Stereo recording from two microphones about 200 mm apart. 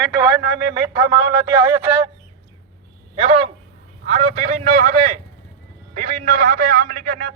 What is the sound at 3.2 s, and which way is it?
A man's voice, 25° right (ahead or behind).